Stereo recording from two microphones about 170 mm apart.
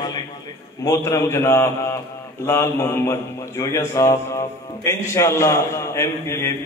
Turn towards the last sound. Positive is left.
turn(degrees=15)  # may be behind; listen again after turning